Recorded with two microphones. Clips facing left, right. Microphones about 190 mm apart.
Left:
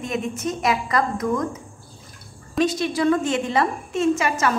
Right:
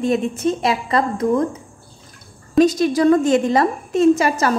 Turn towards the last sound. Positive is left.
turn(degrees=-35)  # may be behind; listen again after turning